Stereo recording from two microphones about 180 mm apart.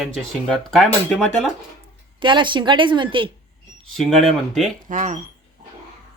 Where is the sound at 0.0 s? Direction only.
Centre (ahead or behind).